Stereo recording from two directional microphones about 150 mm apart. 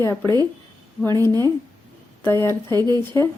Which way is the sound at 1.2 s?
25° right (ahead or behind).